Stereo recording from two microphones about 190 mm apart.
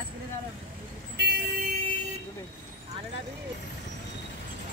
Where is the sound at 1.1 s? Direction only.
60° right (ahead or behind).